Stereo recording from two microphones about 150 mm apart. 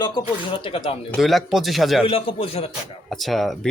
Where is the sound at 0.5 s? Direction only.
35° left (ahead or behind).